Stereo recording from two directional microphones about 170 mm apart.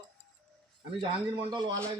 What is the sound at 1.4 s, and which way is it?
Speech, 25° right (ahead or behind).